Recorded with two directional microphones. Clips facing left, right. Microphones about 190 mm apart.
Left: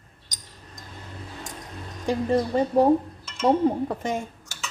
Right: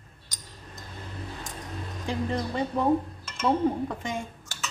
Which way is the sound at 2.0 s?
40° left (ahead or behind).